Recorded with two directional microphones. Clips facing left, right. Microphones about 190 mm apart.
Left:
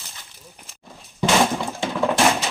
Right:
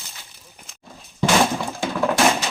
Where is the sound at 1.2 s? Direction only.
5° right (ahead or behind).